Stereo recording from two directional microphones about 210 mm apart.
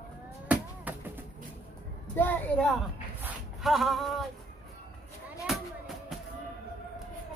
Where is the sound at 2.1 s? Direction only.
10° left (ahead or behind).